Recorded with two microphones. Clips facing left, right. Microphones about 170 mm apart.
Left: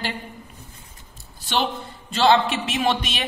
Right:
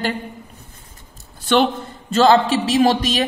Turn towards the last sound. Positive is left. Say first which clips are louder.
# right 7 dB
turn(degrees=-35)  # may be behind; listen again after turning